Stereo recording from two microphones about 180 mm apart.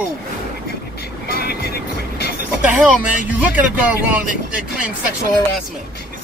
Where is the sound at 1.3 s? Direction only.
60° left (ahead or behind).